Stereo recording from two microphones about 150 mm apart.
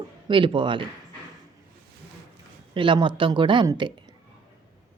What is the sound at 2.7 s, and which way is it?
A woman's voice, 35° right (ahead or behind).